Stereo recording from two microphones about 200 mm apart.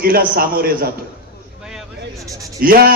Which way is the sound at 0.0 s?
50° right (ahead or behind).